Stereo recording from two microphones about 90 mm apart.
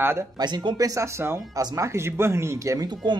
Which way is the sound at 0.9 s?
35° right (ahead or behind).